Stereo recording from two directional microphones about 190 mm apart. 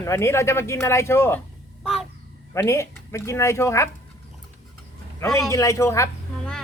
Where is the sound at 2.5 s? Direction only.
15° left (ahead or behind).